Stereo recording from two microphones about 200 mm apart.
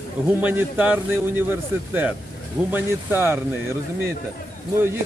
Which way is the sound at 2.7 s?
10° right (ahead or behind).